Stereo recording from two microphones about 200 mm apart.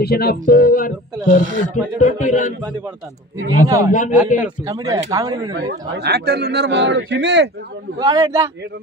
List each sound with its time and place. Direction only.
0.0 s speech: 50° left (ahead or behind)
1.4 s speech: 40° right (ahead or behind)
2.0 s speech: 40° left (ahead or behind)
3.6 s speech: 15° right (ahead or behind)
3.9 s speech: 40° left (ahead or behind)
4.4 s speech: 15° right (ahead or behind)
5.6 s a man's voice: 55° right (ahead or behind)
8.0 s a man's voice: 20° right (ahead or behind)